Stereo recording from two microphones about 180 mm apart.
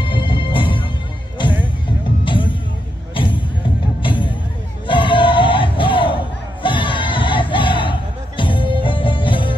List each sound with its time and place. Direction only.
0.0 s music: 25° left (ahead or behind)
2.2 s music: 30° left (ahead or behind)